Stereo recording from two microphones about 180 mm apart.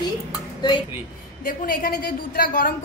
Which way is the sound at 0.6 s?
25° left (ahead or behind).